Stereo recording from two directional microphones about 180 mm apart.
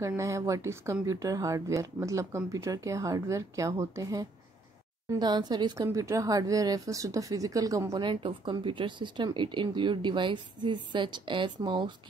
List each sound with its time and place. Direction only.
0.0 s a woman's voice: 15° right (ahead or behind)